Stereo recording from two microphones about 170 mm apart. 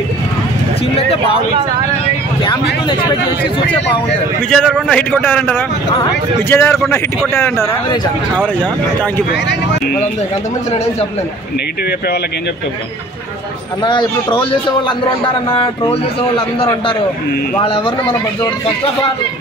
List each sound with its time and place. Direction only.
0.9 s speech: 35° left (ahead or behind)
2.4 s vehicle: 30° left (ahead or behind)
4.5 s a man's voice: 5° left (ahead or behind)
9.3 s speech: 90° left
13.8 s a man's voice: 25° left (ahead or behind)